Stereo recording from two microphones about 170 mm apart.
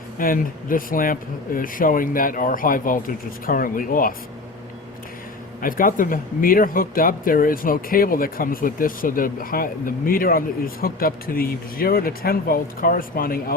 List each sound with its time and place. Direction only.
0.2 s speech: 55° left (ahead or behind)
5.6 s speech: 55° left (ahead or behind)